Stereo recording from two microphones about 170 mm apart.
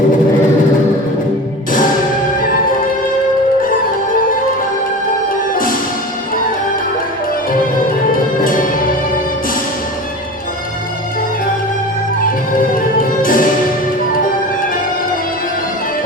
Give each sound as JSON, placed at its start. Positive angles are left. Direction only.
{"t": 8.1, "sound": "music", "side_deg": 55}
{"t": 12.5, "sound": "music", "side_deg": 55}